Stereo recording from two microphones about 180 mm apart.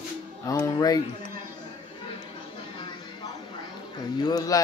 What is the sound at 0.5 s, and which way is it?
Speech, 20° left (ahead or behind).